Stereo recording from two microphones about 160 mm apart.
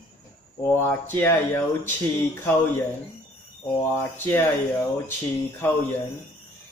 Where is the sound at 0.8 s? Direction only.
15° left (ahead or behind).